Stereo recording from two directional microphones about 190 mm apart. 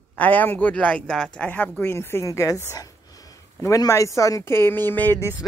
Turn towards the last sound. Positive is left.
turn(degrees=10)  # may be behind; listen again after turning